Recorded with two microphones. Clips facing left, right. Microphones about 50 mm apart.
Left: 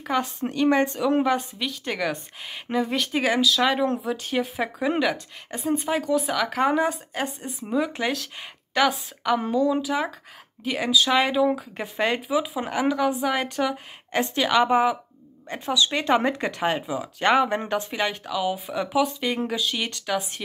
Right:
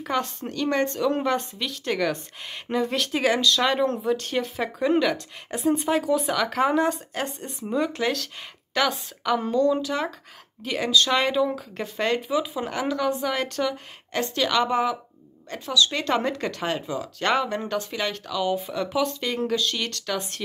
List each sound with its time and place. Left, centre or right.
0.0 s a woman's voice: centre